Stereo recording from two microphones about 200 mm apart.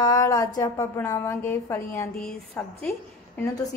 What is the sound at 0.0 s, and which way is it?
A woman's voice, 15° left (ahead or behind).